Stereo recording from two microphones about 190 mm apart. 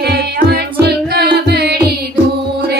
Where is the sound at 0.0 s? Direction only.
55° right (ahead or behind).